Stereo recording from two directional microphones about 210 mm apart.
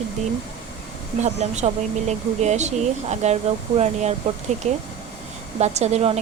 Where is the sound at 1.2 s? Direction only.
35° right (ahead or behind).